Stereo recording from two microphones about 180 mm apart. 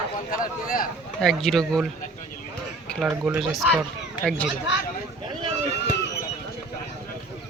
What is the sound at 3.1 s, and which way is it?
Speech, 5° right (ahead or behind).